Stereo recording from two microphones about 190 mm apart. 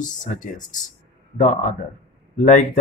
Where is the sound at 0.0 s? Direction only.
40° left (ahead or behind).